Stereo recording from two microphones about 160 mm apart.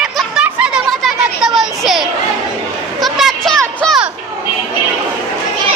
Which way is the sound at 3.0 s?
Centre (ahead or behind).